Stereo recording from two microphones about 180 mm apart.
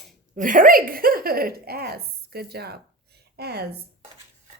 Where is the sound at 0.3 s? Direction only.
50° right (ahead or behind).